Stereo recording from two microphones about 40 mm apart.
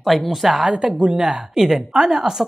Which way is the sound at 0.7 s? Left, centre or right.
Centre.